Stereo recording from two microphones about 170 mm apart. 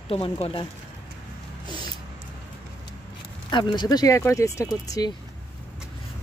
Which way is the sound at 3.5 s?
25° left (ahead or behind).